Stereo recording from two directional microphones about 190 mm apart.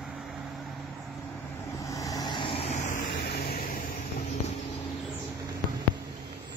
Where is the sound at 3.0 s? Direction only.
55° left (ahead or behind).